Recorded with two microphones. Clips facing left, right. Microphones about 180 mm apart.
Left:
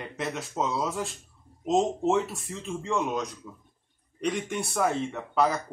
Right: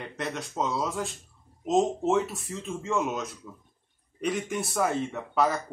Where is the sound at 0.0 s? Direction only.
Centre (ahead or behind).